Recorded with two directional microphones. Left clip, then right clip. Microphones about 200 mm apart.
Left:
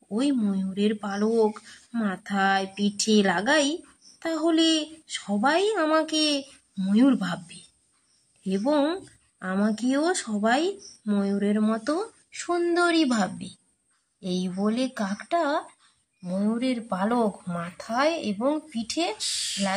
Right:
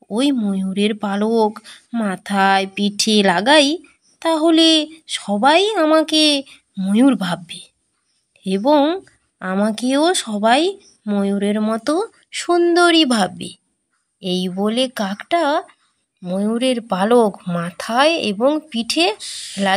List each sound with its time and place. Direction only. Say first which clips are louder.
0.1 s speech: right 7 dB; 40° right (ahead or behind)